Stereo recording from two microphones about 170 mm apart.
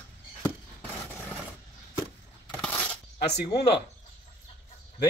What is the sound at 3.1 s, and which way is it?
Speech, 75° left (ahead or behind).